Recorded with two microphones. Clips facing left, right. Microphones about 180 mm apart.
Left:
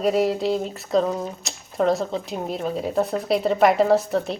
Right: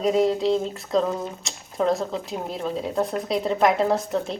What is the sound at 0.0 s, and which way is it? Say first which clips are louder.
A woman's voice: even; 5° left (ahead or behind).